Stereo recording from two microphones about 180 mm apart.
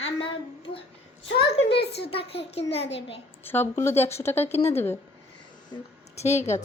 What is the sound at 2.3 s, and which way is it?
Speech, 35° left (ahead or behind).